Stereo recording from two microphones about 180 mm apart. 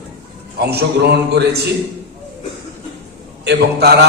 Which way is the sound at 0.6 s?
65° right (ahead or behind).